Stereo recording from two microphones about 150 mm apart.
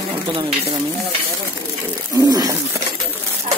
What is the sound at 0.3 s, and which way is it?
Stir, 35° right (ahead or behind).